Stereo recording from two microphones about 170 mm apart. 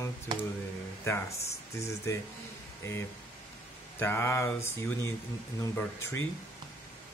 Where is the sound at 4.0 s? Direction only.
15° left (ahead or behind).